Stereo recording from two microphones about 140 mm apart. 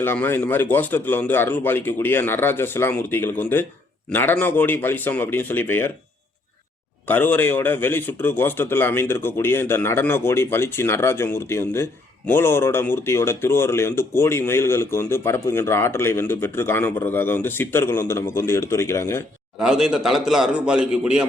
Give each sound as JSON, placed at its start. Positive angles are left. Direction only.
{"t": 0.0, "sound": "speech", "side_deg": 15}
{"t": 7.1, "sound": "speech", "side_deg": 15}
{"t": 19.5, "sound": "a man's voice", "side_deg": -5}